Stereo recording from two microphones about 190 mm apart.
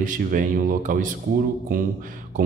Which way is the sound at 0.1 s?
45° right (ahead or behind).